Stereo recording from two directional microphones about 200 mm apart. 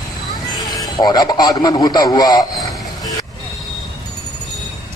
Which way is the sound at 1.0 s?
20° left (ahead or behind).